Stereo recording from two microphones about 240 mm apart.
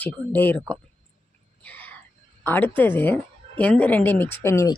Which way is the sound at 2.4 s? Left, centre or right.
Centre.